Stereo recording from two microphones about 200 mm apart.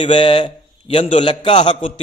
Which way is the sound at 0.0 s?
25° left (ahead or behind).